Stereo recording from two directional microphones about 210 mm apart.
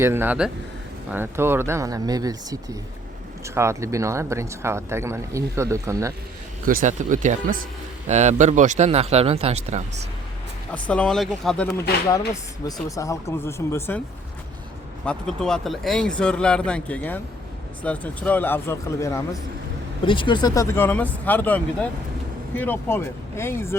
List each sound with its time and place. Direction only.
0.0 s speech: 10° right (ahead or behind)
6.7 s a man's voice: 40° right (ahead or behind)
10.7 s speech: 5° left (ahead or behind)
12.3 s speech: 15° left (ahead or behind)
15.0 s speech: 5° left (ahead or behind)